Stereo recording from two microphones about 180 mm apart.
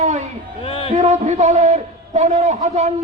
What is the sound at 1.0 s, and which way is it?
A man's voice, 40° right (ahead or behind).